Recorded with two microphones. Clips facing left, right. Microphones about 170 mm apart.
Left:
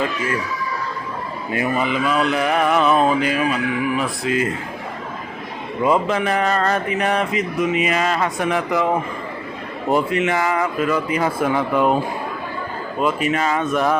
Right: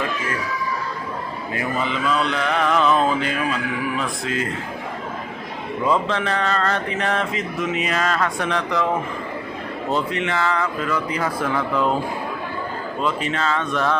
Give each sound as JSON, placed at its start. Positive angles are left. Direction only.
{"t": 1.8, "sound": "speech", "side_deg": 10}
{"t": 5.8, "sound": "speech", "side_deg": 15}
{"t": 7.1, "sound": "speech", "side_deg": 0}
{"t": 9.9, "sound": "a man's voice", "side_deg": 15}
{"t": 13.0, "sound": "speech", "side_deg": 15}